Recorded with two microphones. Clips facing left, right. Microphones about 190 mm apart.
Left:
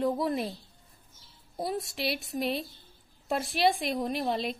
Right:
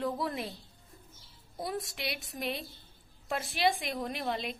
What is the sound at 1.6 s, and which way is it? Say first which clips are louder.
Speech: left 4 dB; 25° left (ahead or behind).